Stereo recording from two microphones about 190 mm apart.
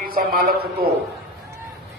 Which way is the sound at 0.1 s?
50° right (ahead or behind).